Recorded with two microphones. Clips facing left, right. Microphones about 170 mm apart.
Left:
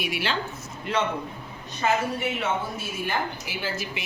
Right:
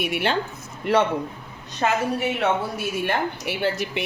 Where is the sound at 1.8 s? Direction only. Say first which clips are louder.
Right 2 dB; 60° right (ahead or behind).